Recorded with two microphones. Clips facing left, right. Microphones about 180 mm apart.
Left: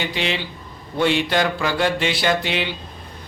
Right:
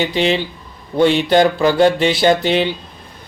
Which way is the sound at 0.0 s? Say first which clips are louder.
Right 8 dB; 40° right (ahead or behind).